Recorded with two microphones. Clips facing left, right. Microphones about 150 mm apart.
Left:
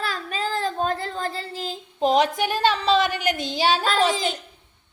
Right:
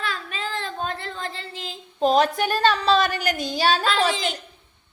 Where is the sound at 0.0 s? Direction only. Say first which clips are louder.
Left 3 dB; 40° left (ahead or behind).